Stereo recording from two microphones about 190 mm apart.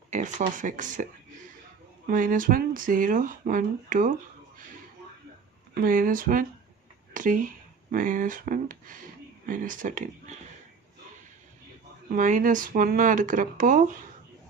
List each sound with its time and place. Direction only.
0.1 s speech: 40° right (ahead or behind)
2.0 s speech: 45° right (ahead or behind)
5.7 s speech: 45° right (ahead or behind)
12.0 s speech: 45° right (ahead or behind)